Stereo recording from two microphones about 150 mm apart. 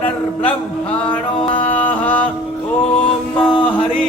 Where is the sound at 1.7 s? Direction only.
10° left (ahead or behind).